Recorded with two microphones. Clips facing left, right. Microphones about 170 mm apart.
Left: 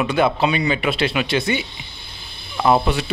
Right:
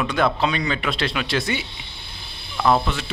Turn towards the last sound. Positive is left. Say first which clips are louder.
# left 3 dB
turn(degrees=15)  # may be behind; listen again after turning